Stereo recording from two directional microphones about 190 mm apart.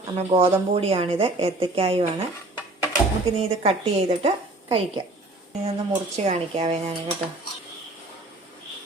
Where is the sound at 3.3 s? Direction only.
30° right (ahead or behind).